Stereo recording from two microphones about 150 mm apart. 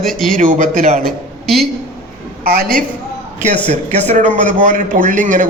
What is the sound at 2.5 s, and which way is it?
Speech, 75° right (ahead or behind).